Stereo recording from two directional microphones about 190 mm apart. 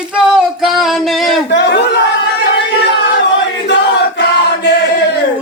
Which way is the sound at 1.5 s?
65° left (ahead or behind).